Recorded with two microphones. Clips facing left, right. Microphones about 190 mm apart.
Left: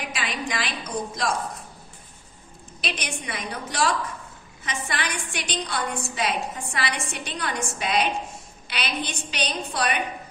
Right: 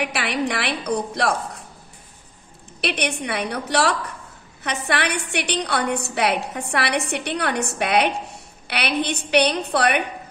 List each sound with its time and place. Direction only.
0.0 s a woman's voice: 70° right (ahead or behind)
2.8 s a woman's voice: 65° right (ahead or behind)